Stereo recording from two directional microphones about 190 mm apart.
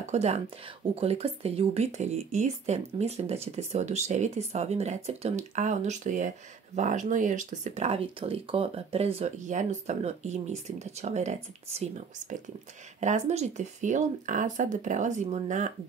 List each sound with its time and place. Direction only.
0.0 s speech: 35° right (ahead or behind)